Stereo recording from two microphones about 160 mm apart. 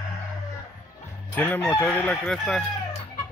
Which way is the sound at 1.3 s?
10° left (ahead or behind).